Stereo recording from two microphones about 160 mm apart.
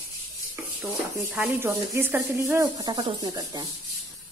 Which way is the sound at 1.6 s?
15° right (ahead or behind).